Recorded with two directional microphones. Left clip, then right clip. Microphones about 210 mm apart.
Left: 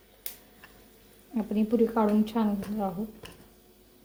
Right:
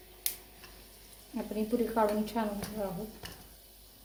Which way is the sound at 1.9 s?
40° left (ahead or behind).